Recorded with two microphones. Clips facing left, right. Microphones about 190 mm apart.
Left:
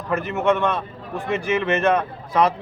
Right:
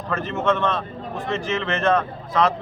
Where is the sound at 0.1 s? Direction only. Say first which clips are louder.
Left 2 dB; 10° left (ahead or behind).